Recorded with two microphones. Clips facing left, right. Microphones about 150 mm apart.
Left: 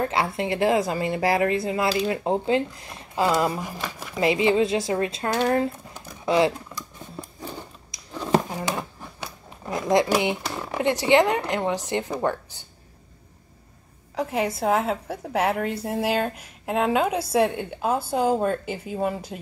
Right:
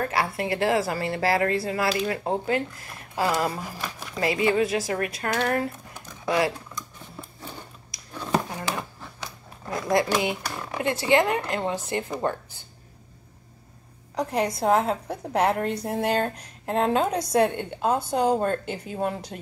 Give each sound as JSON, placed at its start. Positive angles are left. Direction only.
{"t": 0.0, "sound": "speech", "side_deg": 20}
{"t": 3.8, "sound": "a woman's voice", "side_deg": 0}
{"t": 4.2, "sound": "speech", "side_deg": 20}
{"t": 7.9, "sound": "a sound", "side_deg": 20}
{"t": 9.7, "sound": "speech", "side_deg": 20}
{"t": 14.1, "sound": "a woman's voice", "side_deg": 5}